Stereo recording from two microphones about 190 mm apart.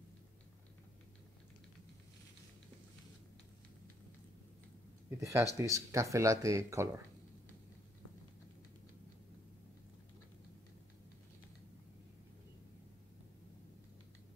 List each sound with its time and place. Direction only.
5.2 s speech: 15° right (ahead or behind)